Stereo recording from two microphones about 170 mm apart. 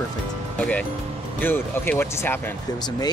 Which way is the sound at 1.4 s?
10° left (ahead or behind).